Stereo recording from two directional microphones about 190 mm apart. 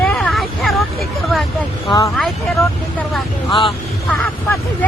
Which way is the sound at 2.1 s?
Centre (ahead or behind).